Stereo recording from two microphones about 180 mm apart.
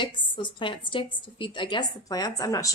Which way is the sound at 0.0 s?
25° left (ahead or behind).